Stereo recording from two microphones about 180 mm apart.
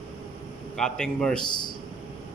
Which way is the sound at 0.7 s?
5° left (ahead or behind).